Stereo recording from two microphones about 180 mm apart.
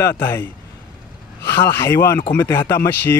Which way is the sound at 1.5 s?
10° left (ahead or behind).